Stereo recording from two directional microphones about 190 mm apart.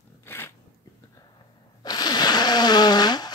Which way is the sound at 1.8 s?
20° left (ahead or behind).